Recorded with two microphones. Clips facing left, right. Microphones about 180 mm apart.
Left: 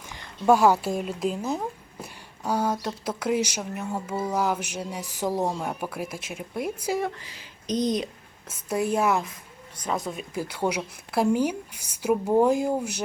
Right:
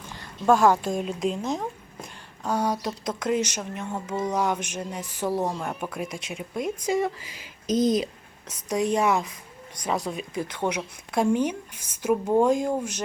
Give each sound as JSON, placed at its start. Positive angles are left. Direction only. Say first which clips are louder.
{"t": 0.1, "sound": "speech", "louder": "left 1 dB", "side_deg": 10}
{"t": 7.2, "sound": "a woman's voice", "louder": "right 1 dB", "side_deg": -10}